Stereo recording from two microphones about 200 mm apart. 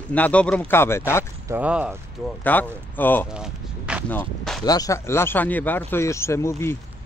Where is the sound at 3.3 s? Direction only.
5° right (ahead or behind).